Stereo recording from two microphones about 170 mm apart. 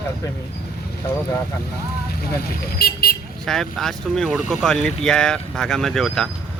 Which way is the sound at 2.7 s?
60° left (ahead or behind).